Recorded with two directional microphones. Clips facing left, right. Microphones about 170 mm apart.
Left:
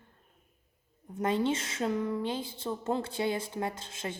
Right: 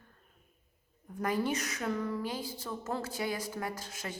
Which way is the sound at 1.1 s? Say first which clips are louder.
Left 3 dB; 25° left (ahead or behind).